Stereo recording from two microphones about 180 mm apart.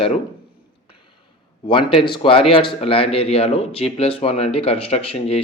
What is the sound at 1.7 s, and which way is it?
Speech, 30° left (ahead or behind).